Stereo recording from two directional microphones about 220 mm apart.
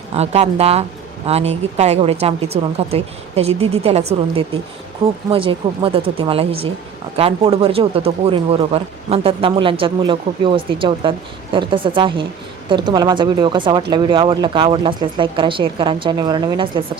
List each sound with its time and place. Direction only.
0.1 s speech: 30° right (ahead or behind)